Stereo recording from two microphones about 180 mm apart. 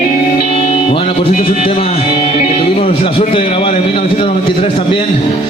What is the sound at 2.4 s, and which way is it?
A man's voice, 35° left (ahead or behind).